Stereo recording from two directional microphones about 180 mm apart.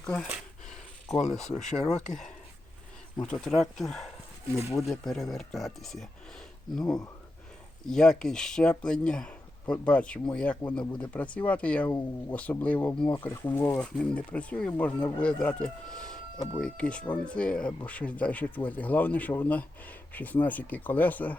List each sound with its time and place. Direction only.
0.0 s speech: 5° left (ahead or behind)
1.4 s speech: 40° left (ahead or behind)
1.9 s speech: 5° left (ahead or behind)
3.2 s speech: 5° left (ahead or behind)
7.9 s speech: 5° left (ahead or behind)